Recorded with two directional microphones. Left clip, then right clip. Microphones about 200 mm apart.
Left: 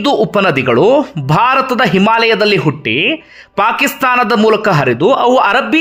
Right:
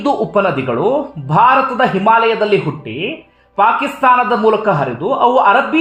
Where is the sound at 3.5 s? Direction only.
25° left (ahead or behind).